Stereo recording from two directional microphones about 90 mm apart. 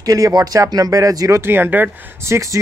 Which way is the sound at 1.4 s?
25° right (ahead or behind).